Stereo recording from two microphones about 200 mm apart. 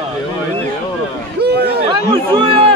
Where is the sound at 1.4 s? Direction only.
55° right (ahead or behind).